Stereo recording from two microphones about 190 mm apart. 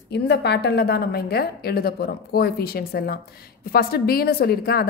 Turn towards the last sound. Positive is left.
turn(degrees=55)  # may be behind; listen again after turning